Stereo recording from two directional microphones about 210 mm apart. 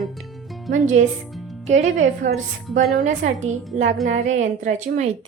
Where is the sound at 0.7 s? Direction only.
35° right (ahead or behind).